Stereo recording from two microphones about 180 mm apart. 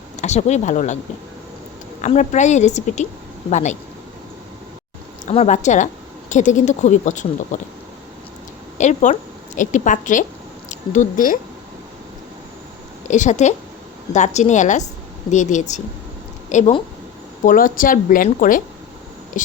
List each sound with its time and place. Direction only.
0.2 s speech: 40° left (ahead or behind)
2.0 s a woman's voice: 40° left (ahead or behind)
5.2 s a woman's voice: 40° left (ahead or behind)
8.8 s a woman's voice: 40° left (ahead or behind)
13.1 s a woman's voice: 40° left (ahead or behind)